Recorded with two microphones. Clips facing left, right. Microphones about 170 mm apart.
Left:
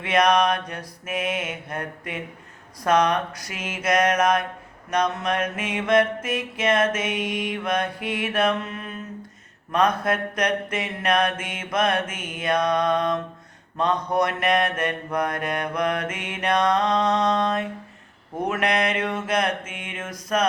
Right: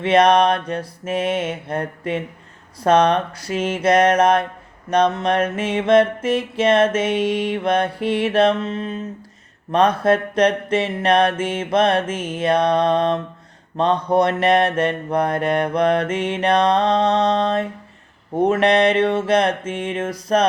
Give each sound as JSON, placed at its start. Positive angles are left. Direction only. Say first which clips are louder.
{"t": 0.0, "sound": "music", "louder": "right 5 dB", "side_deg": -30}
{"t": 9.7, "sound": "mantra", "louder": "right 6 dB", "side_deg": -30}
{"t": 13.7, "sound": "music", "louder": "right 5 dB", "side_deg": -30}
{"t": 18.3, "sound": "mantra", "louder": "right 8 dB", "side_deg": -30}